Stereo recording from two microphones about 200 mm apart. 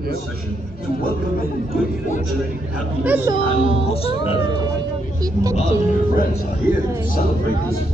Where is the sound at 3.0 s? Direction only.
10° right (ahead or behind).